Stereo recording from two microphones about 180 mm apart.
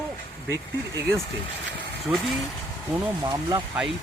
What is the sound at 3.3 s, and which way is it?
Speech, 20° right (ahead or behind).